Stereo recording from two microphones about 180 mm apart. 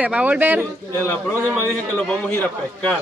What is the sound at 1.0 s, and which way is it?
A man's voice, 15° left (ahead or behind).